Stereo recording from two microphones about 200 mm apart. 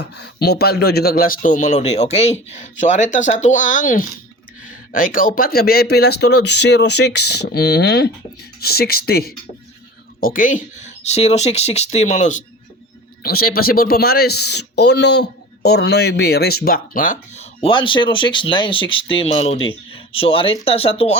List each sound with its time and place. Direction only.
0.0 s speech: 55° left (ahead or behind); by 12.4 s 40° left (ahead or behind)
13.2 s speech: 50° left (ahead or behind); by 21.2 s 30° left (ahead or behind)